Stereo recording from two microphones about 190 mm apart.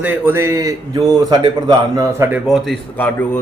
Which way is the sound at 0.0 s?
10° right (ahead or behind).